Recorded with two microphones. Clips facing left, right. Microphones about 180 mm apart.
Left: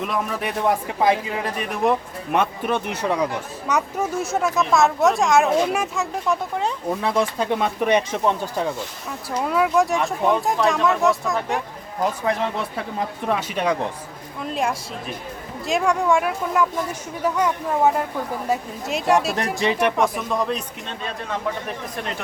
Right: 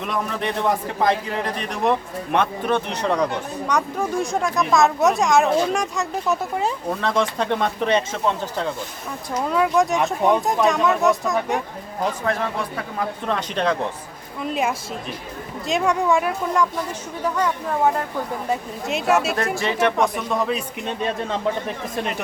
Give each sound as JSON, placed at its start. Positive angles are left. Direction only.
{"t": 0.0, "sound": "speech", "side_deg": 5}
{"t": 7.0, "sound": "speech", "side_deg": 5}
{"t": 12.2, "sound": "speech", "side_deg": 20}
{"t": 14.5, "sound": "speech", "side_deg": -5}
{"t": 18.9, "sound": "speech", "side_deg": 0}
{"t": 19.5, "sound": "speech", "side_deg": 20}
{"t": 20.0, "sound": "speech", "side_deg": 0}